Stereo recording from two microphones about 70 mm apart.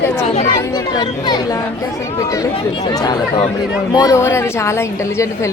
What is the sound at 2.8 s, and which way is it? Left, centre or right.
Speech, left.